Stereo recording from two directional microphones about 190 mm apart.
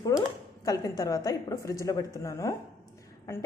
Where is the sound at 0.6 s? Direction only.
20° left (ahead or behind).